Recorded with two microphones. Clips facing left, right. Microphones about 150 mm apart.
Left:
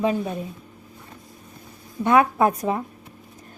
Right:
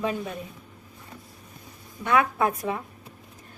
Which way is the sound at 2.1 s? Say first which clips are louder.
Left 5 dB; 40° left (ahead or behind).